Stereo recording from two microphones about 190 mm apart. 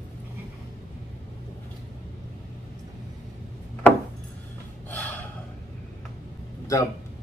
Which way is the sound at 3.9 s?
10° left (ahead or behind).